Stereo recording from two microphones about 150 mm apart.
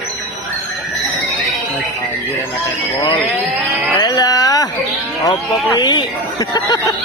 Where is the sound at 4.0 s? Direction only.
25° left (ahead or behind).